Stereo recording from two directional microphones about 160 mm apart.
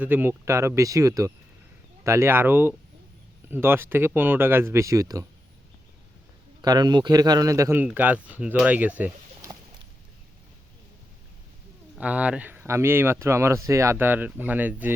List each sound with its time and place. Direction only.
0.0 s speech: 10° right (ahead or behind)
6.6 s a man's voice: 25° right (ahead or behind); by 9.5 s 10° right (ahead or behind)
11.9 s speech: 10° right (ahead or behind)